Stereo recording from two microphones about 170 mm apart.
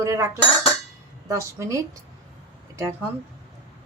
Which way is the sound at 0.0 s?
15° right (ahead or behind).